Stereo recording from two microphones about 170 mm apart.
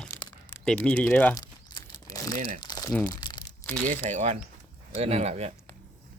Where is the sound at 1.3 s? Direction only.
20° left (ahead or behind).